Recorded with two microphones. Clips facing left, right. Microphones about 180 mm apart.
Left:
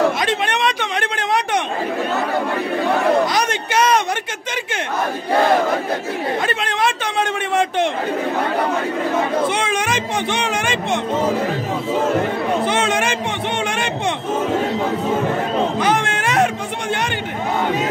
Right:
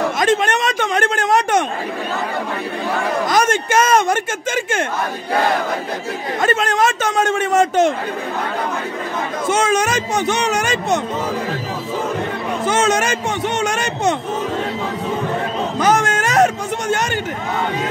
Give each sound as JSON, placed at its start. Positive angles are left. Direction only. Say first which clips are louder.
{"t": 0.2, "sound": "a sound", "louder": "right 3 dB", "side_deg": -45}
{"t": 3.3, "sound": "speech", "louder": "right 4 dB", "side_deg": -45}
{"t": 6.4, "sound": "a man's voice", "louder": "right 4 dB", "side_deg": -45}
{"t": 9.5, "sound": "speech", "louder": "right 4 dB", "side_deg": -45}
{"t": 12.6, "sound": "a man's voice", "louder": "right 2 dB", "side_deg": -45}
{"t": 15.8, "sound": "music", "louder": "right 2 dB", "side_deg": -40}